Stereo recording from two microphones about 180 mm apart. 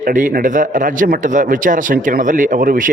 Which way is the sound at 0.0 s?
50° right (ahead or behind).